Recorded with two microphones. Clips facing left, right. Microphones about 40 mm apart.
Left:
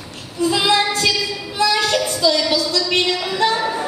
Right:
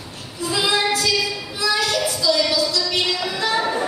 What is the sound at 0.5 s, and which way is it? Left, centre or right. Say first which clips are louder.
Female singing: left 1 dB; left.